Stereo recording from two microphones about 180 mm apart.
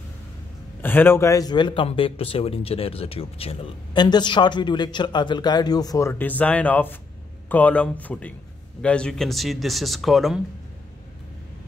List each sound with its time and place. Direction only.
0.8 s speech: 10° left (ahead or behind)